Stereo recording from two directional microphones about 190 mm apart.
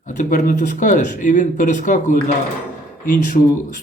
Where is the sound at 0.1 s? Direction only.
45° left (ahead or behind).